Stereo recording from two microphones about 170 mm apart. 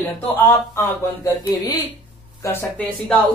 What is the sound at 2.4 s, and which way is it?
Speech, 10° left (ahead or behind).